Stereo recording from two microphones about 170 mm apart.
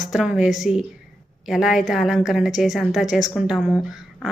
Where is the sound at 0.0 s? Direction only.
5° right (ahead or behind).